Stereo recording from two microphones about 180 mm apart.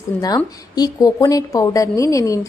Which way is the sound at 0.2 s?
20° left (ahead or behind).